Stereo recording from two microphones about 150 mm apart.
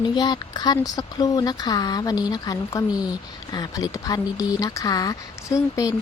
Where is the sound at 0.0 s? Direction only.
30° left (ahead or behind).